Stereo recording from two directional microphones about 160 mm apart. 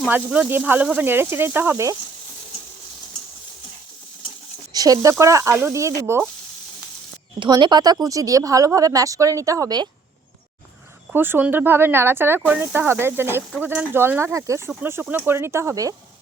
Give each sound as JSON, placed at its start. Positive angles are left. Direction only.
{"t": 0.1, "sound": "speech", "side_deg": -10}
{"t": 4.7, "sound": "speech", "side_deg": -25}
{"t": 7.3, "sound": "speech", "side_deg": -30}
{"t": 11.1, "sound": "speech", "side_deg": -10}